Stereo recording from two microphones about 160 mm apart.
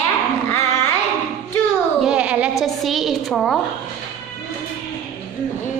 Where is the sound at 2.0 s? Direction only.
5° right (ahead or behind).